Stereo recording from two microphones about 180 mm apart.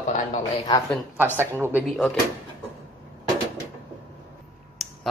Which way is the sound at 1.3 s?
10° right (ahead or behind).